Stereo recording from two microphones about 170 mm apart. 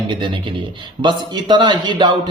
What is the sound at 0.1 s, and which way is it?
A man's voice, 30° right (ahead or behind).